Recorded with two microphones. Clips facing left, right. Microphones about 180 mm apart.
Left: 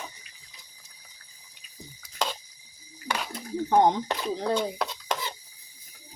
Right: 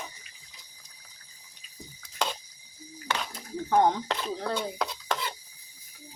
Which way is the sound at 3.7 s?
20° left (ahead or behind).